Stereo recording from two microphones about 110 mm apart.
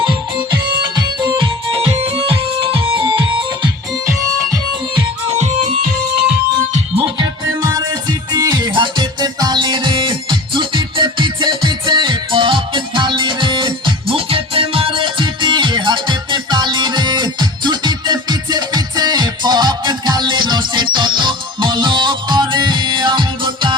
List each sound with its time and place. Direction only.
0.8 s music: 40° right (ahead or behind)
1.7 s music: 60° right (ahead or behind)
5.3 s music: 90° right
6.7 s music: 55° right (ahead or behind)
7.6 s music: 35° right (ahead or behind)